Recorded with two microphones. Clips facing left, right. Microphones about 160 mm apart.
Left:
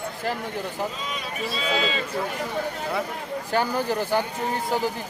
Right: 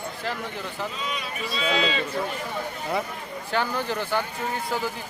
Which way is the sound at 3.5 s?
40° left (ahead or behind).